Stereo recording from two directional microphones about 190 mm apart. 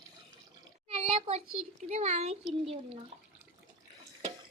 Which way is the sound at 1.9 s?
35° right (ahead or behind).